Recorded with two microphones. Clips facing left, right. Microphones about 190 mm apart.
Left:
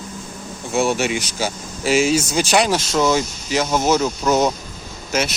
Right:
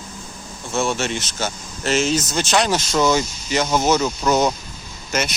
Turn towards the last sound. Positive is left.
turn(degrees=10)  # may be behind; listen again after turning